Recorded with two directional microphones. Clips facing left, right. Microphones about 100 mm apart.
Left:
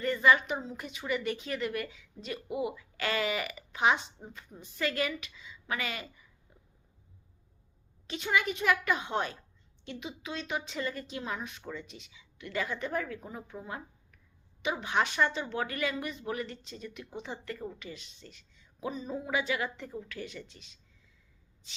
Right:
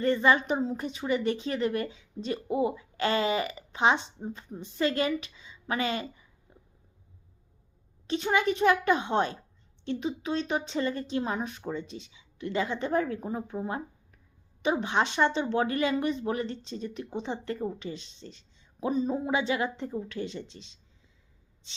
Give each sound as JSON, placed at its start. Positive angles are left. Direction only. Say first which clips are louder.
{"t": 0.0, "sound": "a woman's voice", "louder": "right 2 dB", "side_deg": -30}
{"t": 6.5, "sound": "stomach rumble", "louder": "right 7 dB", "side_deg": -30}
{"t": 8.0, "sound": "a woman's voice", "louder": "right 5 dB", "side_deg": -35}